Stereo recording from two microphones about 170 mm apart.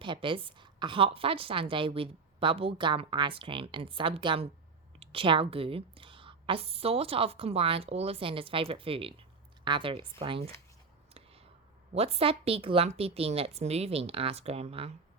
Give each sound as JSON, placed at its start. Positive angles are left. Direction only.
{"t": 0.0, "sound": "a woman's voice", "side_deg": -30}
{"t": 11.9, "sound": "a woman's voice", "side_deg": -35}